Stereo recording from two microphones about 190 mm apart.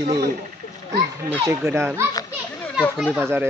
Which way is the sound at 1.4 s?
15° right (ahead or behind).